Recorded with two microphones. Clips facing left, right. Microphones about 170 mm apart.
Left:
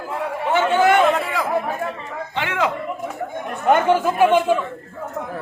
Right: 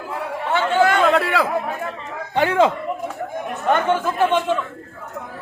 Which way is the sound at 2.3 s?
40° right (ahead or behind).